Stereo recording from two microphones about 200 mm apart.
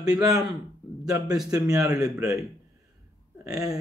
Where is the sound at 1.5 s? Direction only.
15° right (ahead or behind).